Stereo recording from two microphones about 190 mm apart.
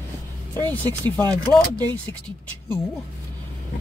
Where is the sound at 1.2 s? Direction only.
20° right (ahead or behind).